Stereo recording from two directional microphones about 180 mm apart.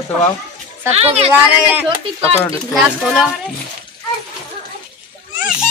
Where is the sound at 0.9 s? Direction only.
35° right (ahead or behind).